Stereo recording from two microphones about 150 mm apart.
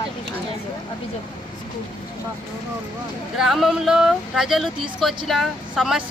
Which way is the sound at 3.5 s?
Centre (ahead or behind).